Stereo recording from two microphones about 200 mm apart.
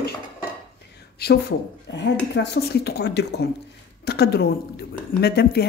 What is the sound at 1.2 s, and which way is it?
Speech, 50° left (ahead or behind).